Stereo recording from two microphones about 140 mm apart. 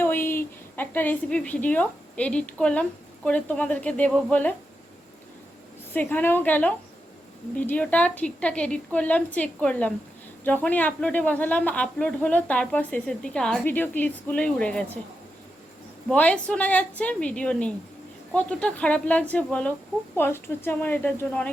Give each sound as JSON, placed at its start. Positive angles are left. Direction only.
{"t": 0.0, "sound": "speech", "side_deg": 15}
{"t": 5.9, "sound": "speech", "side_deg": 10}
{"t": 16.0, "sound": "speech", "side_deg": 10}